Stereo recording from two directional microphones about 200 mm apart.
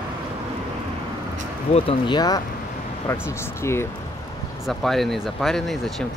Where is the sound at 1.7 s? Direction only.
20° left (ahead or behind).